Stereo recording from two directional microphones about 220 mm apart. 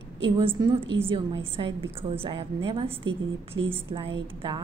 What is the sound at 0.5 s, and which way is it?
A woman's voice, 20° right (ahead or behind).